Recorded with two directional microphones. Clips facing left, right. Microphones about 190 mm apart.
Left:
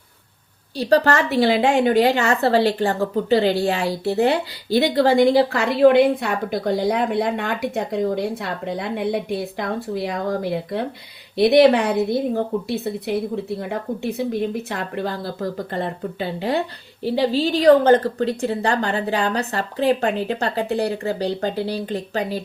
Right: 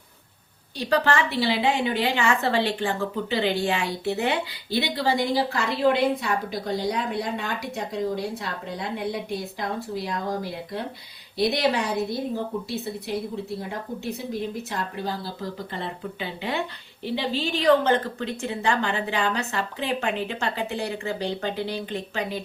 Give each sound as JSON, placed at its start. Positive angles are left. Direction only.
{"t": 0.8, "sound": "a woman's voice", "side_deg": 35}
{"t": 14.7, "sound": "speech", "side_deg": 60}